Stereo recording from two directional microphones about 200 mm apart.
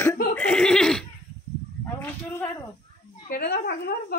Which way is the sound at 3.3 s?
50° left (ahead or behind).